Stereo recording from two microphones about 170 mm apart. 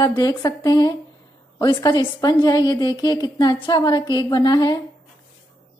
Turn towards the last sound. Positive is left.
turn(degrees=20)  # may be behind; listen again after turning